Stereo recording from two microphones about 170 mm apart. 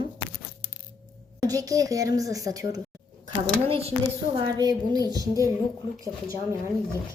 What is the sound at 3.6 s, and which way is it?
Speech, 35° right (ahead or behind).